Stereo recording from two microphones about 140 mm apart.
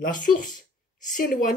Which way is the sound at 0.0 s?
75° left (ahead or behind).